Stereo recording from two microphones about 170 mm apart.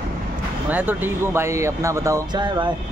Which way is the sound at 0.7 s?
10° right (ahead or behind).